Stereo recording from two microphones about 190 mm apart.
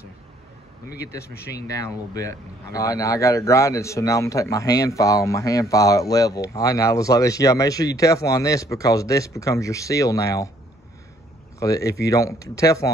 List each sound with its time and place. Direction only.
1.8 s speech: 15° left (ahead or behind)
11.6 s speech: 15° left (ahead or behind)